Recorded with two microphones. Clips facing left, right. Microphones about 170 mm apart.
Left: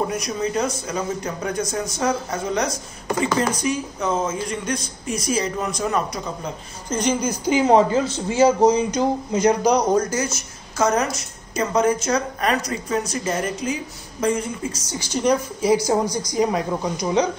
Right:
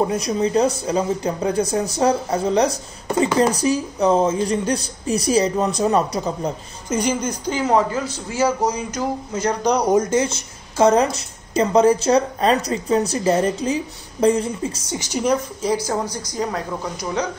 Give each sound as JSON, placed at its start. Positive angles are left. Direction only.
{"t": 0.1, "sound": "speech", "side_deg": -30}
{"t": 7.0, "sound": "a woman's voice", "side_deg": -5}
{"t": 7.4, "sound": "speech", "side_deg": 15}
{"t": 9.8, "sound": "a woman's voice", "side_deg": -25}
{"t": 15.6, "sound": "a woman's voice", "side_deg": 10}